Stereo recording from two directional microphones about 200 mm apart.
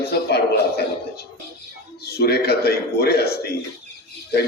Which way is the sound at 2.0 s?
50° left (ahead or behind).